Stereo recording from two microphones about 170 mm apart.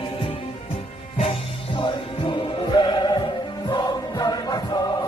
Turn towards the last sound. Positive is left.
turn(degrees=20)  # may be behind; listen again after turning